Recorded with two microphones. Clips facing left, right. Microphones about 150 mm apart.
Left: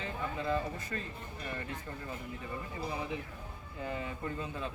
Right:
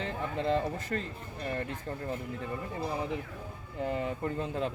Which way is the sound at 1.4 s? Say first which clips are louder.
Right 6 dB; 40° right (ahead or behind).